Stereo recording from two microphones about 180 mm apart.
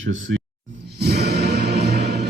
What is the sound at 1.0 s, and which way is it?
Music, 65° right (ahead or behind).